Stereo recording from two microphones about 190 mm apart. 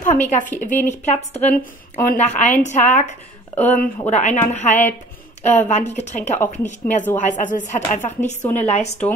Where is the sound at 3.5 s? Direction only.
10° left (ahead or behind).